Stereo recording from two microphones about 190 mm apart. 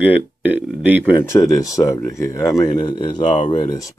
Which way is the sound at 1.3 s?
15° left (ahead or behind).